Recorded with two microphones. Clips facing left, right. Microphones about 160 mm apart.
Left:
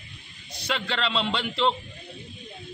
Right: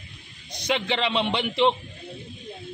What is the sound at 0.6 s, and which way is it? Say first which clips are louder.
A man's voice: right 4 dB; 15° right (ahead or behind).